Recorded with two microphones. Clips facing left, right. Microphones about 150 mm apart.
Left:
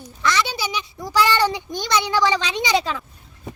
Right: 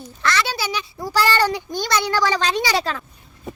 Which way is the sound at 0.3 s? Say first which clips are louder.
Even; 15° left (ahead or behind).